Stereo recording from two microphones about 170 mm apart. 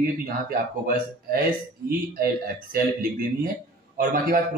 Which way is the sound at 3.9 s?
60° right (ahead or behind).